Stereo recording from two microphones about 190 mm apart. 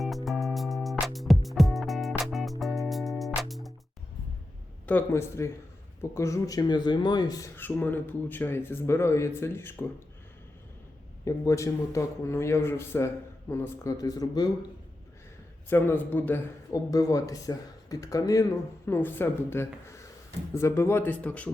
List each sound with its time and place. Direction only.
0.3 s music: centre (ahead or behind)
4.9 s speech: 10° left (ahead or behind)
11.3 s speech: 15° left (ahead or behind)
15.7 s speech: 10° left (ahead or behind)